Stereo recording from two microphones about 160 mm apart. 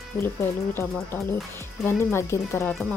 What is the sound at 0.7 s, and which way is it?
Speech, 15° left (ahead or behind).